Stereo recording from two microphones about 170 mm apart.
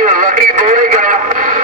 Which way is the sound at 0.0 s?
50° right (ahead or behind).